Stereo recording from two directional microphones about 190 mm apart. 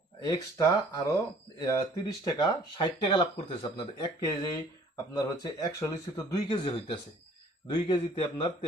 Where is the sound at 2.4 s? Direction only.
25° left (ahead or behind).